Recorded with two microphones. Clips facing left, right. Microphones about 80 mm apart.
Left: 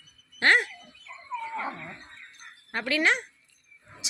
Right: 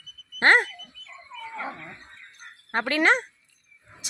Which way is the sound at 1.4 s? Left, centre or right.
Centre.